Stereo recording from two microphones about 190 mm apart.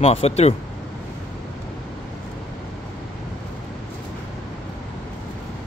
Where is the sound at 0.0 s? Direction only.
35° left (ahead or behind).